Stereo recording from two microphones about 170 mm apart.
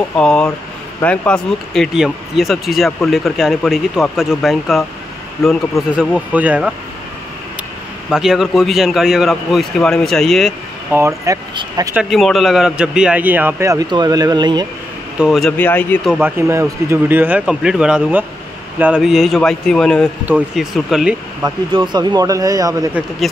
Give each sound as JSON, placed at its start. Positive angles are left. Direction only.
{"t": 0.1, "sound": "speech", "side_deg": 5}
{"t": 6.3, "sound": "a man's voice", "side_deg": -10}
{"t": 8.1, "sound": "speech", "side_deg": 0}
{"t": 10.9, "sound": "a man's voice", "side_deg": -15}
{"t": 11.9, "sound": "a man's voice", "side_deg": 0}
{"t": 15.1, "sound": "speech", "side_deg": 0}
{"t": 15.5, "sound": "speech", "side_deg": 10}
{"t": 16.2, "sound": "a man's voice", "side_deg": -10}
{"t": 21.7, "sound": "a man's voice", "side_deg": -25}